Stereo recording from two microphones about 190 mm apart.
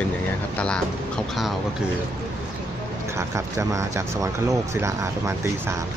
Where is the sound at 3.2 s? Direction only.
15° right (ahead or behind).